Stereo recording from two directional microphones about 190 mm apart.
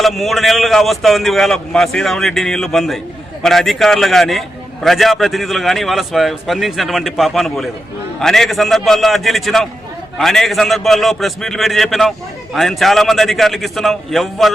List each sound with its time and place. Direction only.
0.0 s a man's voice: centre (ahead or behind)